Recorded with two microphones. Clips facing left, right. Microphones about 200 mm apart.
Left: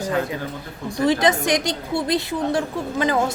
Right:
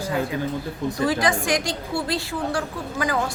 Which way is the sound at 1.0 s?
20° left (ahead or behind).